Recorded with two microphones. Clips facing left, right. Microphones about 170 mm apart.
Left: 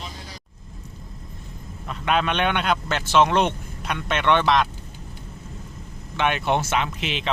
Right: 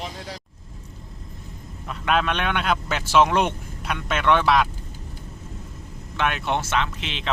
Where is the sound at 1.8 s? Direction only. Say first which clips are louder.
Even; centre (ahead or behind).